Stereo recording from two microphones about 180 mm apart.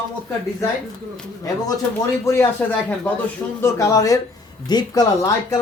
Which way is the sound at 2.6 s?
10° left (ahead or behind).